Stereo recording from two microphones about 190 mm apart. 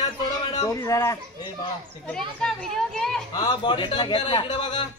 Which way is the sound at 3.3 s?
25° left (ahead or behind).